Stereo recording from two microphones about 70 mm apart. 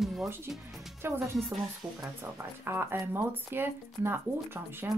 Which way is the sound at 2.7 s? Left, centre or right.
Right.